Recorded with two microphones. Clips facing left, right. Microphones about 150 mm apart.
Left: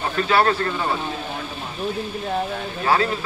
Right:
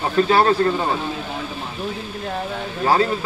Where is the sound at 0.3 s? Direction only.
20° right (ahead or behind).